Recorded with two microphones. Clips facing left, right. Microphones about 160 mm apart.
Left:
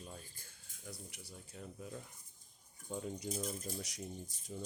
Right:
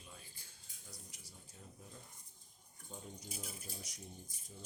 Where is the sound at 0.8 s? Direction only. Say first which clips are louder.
Left 8 dB; 65° left (ahead or behind).